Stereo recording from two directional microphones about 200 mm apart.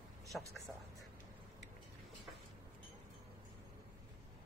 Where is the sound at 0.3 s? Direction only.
5° left (ahead or behind).